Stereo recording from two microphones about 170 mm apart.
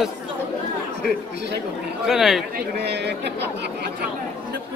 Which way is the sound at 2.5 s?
80° right.